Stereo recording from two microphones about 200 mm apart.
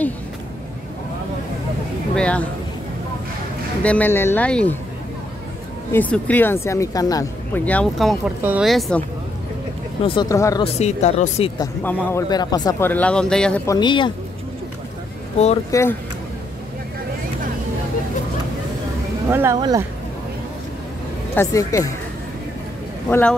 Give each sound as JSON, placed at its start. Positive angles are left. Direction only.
{"t": 2.1, "sound": "speech", "side_deg": 5}
{"t": 3.8, "sound": "speech", "side_deg": 10}
{"t": 5.9, "sound": "speech", "side_deg": 10}
{"t": 8.4, "sound": "speech", "side_deg": -10}
{"t": 8.6, "sound": "speech", "side_deg": 0}
{"t": 10.0, "sound": "speech", "side_deg": 20}
{"t": 10.6, "sound": "speech", "side_deg": 35}
{"t": 11.8, "sound": "speech", "side_deg": 10}
{"t": 12.9, "sound": "speech", "side_deg": 5}
{"t": 13.7, "sound": "speech", "side_deg": 20}
{"t": 15.7, "sound": "speech", "side_deg": 10}
{"t": 19.2, "sound": "speech", "side_deg": -15}
{"t": 21.4, "sound": "speech", "side_deg": 15}
{"t": 23.0, "sound": "speech", "side_deg": 10}